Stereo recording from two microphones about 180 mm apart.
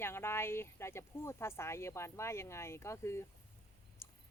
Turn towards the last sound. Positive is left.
turn(degrees=15)  # may be behind; listen again after turning